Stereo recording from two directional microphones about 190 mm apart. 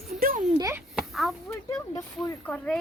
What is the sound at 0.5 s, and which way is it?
Speech, 20° right (ahead or behind).